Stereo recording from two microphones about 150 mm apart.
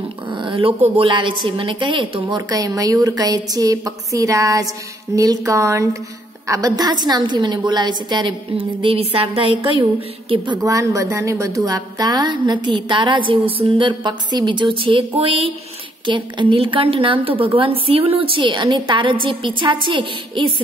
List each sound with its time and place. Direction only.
0.3 s a woman's voice: 35° right (ahead or behind)
2.2 s a woman's voice: 25° right (ahead or behind)